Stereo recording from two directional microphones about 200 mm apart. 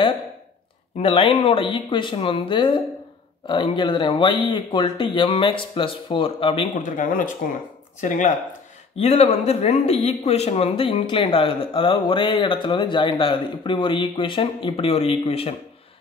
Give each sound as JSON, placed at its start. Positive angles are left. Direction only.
{"t": 0.9, "sound": "speech", "side_deg": 30}
{"t": 6.8, "sound": "speech", "side_deg": 40}
{"t": 8.9, "sound": "speech", "side_deg": 30}